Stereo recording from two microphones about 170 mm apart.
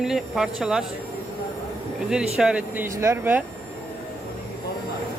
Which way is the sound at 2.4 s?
5° right (ahead or behind).